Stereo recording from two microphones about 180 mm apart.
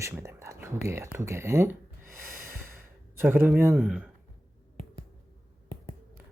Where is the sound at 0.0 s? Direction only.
15° right (ahead or behind).